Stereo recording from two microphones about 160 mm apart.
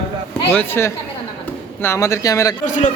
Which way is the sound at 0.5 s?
15° left (ahead or behind).